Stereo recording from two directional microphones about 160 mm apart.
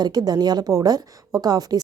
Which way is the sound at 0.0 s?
25° right (ahead or behind).